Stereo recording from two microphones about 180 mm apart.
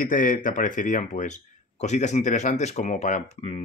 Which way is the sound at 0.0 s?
50° left (ahead or behind).